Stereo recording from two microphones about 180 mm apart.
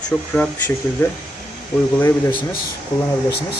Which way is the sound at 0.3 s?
10° left (ahead or behind).